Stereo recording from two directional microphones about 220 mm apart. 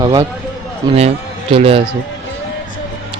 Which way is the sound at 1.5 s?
25° right (ahead or behind).